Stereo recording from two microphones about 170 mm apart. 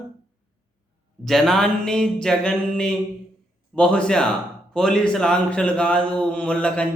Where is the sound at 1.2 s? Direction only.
Centre (ahead or behind).